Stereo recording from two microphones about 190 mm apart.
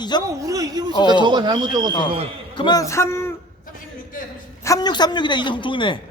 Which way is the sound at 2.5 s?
20° left (ahead or behind).